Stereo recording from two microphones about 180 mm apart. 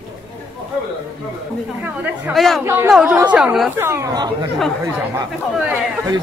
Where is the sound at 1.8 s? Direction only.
10° right (ahead or behind).